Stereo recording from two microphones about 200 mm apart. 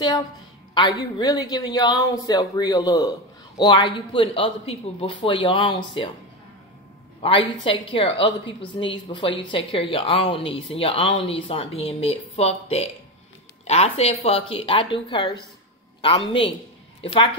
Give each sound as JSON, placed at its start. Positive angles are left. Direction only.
{"t": 0.7, "sound": "a woman's voice", "side_deg": 20}
{"t": 7.2, "sound": "a woman's voice", "side_deg": 25}